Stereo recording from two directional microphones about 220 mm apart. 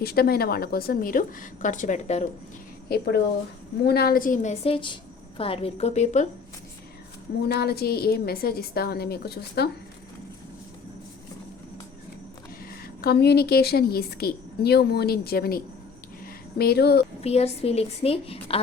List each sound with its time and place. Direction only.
0.0 s a woman's voice: 45° left (ahead or behind)
2.9 s a woman's voice: 50° left (ahead or behind); by 6.2 s 30° left (ahead or behind)
7.4 s a woman's voice: 45° left (ahead or behind)
12.6 s a woman's voice: 45° left (ahead or behind)
16.2 s a sound: 45° left (ahead or behind)
17.2 s a woman's voice: 30° left (ahead or behind)